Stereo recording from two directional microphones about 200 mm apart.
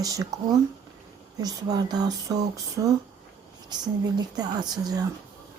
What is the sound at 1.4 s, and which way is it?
Speech, 20° right (ahead or behind).